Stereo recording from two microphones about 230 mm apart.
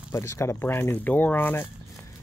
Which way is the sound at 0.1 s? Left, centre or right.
Centre.